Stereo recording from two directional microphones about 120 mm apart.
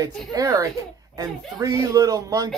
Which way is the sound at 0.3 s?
30° right (ahead or behind).